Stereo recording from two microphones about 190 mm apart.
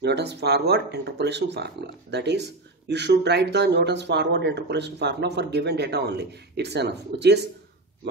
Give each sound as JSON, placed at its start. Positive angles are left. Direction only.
{"t": 0.0, "sound": "speech", "side_deg": -60}